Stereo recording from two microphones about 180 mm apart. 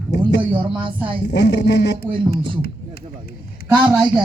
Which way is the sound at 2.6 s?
60° left (ahead or behind).